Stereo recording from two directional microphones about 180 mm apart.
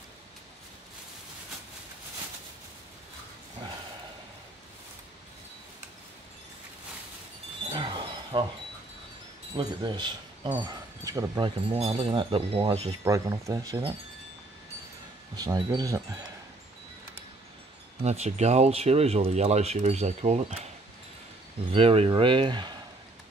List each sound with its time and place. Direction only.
7.7 s a sound: 30° right (ahead or behind)
9.6 s speech: 25° right (ahead or behind)
13.0 s speech: 15° right (ahead or behind)
15.3 s speech: 20° right (ahead or behind)
18.0 s speech: 35° right (ahead or behind)
21.7 s speech: 35° right (ahead or behind)